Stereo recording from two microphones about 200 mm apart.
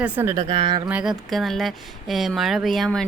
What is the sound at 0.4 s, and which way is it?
Speech, 30° right (ahead or behind).